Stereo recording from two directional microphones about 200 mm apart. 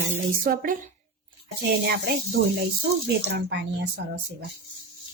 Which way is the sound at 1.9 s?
50° right (ahead or behind).